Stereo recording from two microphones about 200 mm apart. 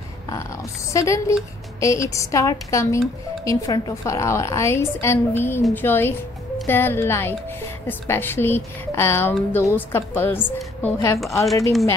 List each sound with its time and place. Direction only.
0.9 s a woman's voice: 15° left (ahead or behind)